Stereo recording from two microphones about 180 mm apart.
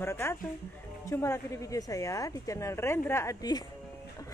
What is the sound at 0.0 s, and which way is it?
A woman's voice, 15° left (ahead or behind).